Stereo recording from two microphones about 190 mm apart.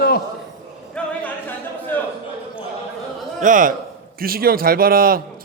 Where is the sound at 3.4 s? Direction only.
45° right (ahead or behind).